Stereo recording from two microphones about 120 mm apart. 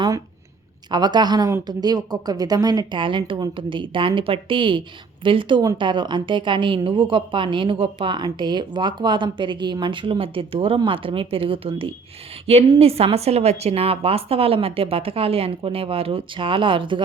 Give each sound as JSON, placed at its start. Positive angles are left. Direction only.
{"t": 0.9, "sound": "a woman's voice", "side_deg": -35}